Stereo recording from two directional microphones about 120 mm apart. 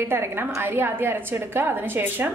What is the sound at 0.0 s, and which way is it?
A woman's voice, 20° right (ahead or behind).